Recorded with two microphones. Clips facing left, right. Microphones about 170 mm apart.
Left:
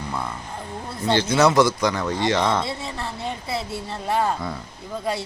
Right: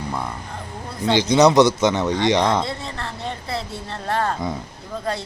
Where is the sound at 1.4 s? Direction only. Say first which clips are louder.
Right 4 dB; 20° right (ahead or behind).